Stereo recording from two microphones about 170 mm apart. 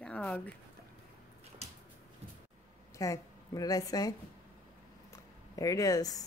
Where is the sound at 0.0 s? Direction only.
5° left (ahead or behind).